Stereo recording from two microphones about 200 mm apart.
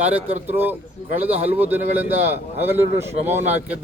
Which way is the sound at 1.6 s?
10° right (ahead or behind).